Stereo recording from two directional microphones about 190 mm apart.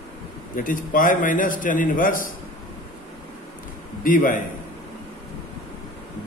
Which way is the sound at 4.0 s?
45° left (ahead or behind).